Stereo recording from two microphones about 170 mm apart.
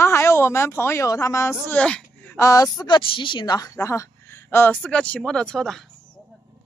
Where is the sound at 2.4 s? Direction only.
20° left (ahead or behind); by 5.7 s 5° left (ahead or behind).